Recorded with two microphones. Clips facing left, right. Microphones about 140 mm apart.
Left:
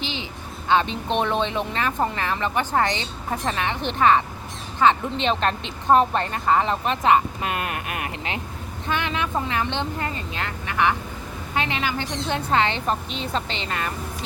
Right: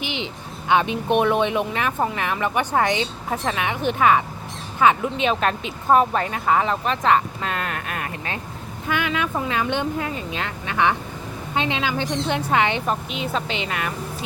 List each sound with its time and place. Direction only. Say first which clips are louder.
0.0 s a sound: right 2 dB; 15° right (ahead or behind)
0.7 s a woman's voice: right 2 dB; 15° right (ahead or behind); by 8.4 s 20° left (ahead or behind)
8.9 s speech: right 2 dB; 10° right (ahead or behind)